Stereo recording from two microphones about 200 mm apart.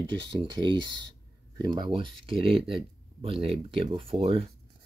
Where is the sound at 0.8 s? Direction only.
65° right (ahead or behind).